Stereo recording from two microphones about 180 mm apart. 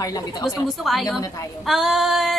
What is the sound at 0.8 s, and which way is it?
A woman's voice, centre (ahead or behind).